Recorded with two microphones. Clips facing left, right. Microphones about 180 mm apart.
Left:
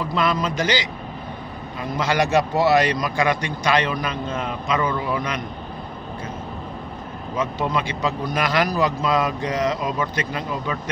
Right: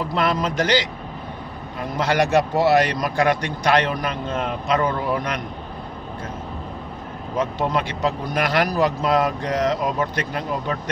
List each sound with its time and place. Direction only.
0.1 s a man's voice: 60° right (ahead or behind)
7.7 s speech: 55° right (ahead or behind)